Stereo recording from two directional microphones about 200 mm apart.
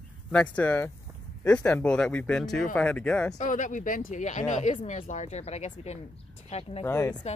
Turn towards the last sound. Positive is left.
turn(degrees=15)  # may be behind; listen again after turning